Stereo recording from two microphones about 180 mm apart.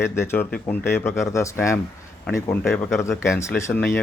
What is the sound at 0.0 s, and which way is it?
Speech, 15° left (ahead or behind).